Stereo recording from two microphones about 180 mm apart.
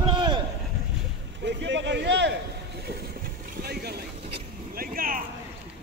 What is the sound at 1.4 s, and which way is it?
Speech, 80° right.